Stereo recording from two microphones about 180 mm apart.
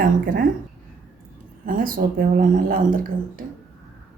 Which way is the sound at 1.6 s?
50° right (ahead or behind).